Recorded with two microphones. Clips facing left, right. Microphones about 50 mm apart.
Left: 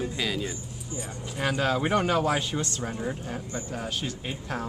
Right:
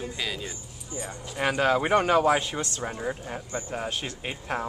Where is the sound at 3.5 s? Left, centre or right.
Right.